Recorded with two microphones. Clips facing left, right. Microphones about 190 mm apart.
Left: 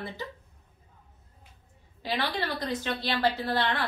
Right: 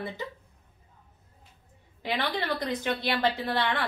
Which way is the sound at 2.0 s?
20° right (ahead or behind).